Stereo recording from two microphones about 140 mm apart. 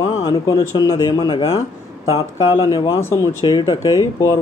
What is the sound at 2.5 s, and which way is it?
Speech, 25° left (ahead or behind).